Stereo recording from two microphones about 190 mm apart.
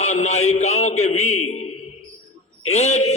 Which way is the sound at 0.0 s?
35° left (ahead or behind).